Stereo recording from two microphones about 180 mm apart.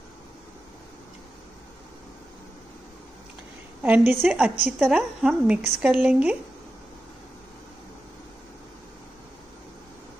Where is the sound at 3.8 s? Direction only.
10° right (ahead or behind).